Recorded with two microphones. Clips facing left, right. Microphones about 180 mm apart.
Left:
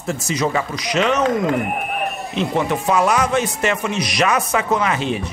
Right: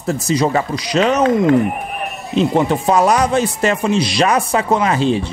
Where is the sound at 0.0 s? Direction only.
35° right (ahead or behind).